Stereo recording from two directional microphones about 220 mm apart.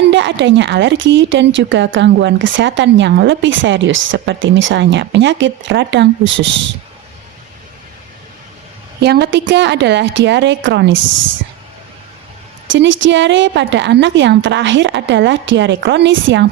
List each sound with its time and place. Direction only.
0.1 s speech: 55° right (ahead or behind)
9.0 s a woman's voice: 50° right (ahead or behind)
12.7 s speech: 60° right (ahead or behind)